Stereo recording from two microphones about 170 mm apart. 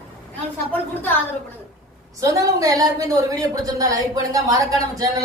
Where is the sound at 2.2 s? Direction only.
20° right (ahead or behind).